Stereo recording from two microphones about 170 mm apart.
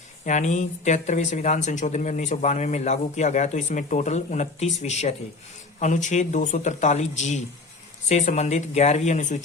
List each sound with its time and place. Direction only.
0.3 s speech: 45° left (ahead or behind)